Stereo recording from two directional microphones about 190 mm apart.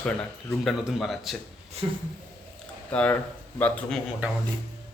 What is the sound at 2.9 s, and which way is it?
A man's voice, 5° left (ahead or behind).